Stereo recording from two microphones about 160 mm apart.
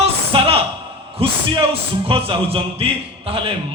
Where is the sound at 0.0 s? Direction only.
35° right (ahead or behind).